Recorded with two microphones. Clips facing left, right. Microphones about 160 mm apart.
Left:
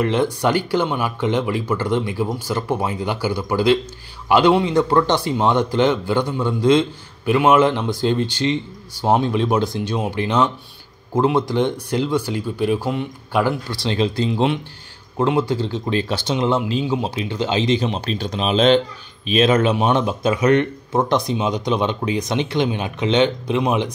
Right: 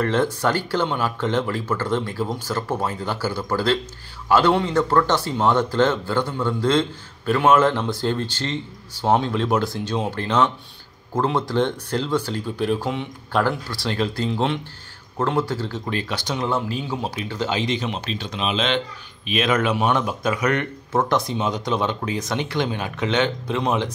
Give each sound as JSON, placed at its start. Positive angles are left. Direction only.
{"t": 0.0, "sound": "a man's voice", "side_deg": 15}
{"t": 13.7, "sound": "speech", "side_deg": 20}